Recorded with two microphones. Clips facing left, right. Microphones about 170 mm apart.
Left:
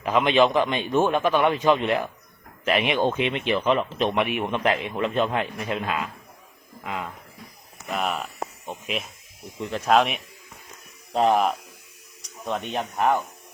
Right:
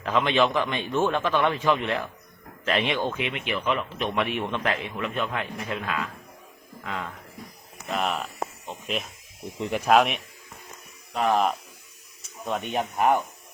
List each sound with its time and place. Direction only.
0.0 s speech: 15° left (ahead or behind)
3.0 s a man's voice: 25° left (ahead or behind)
4.2 s a man's voice: 15° left (ahead or behind)
6.8 s speech: 10° left (ahead or behind)
9.6 s speech: 15° right (ahead or behind)
11.1 s a man's voice: 30° left (ahead or behind)
12.5 s speech: 5° right (ahead or behind)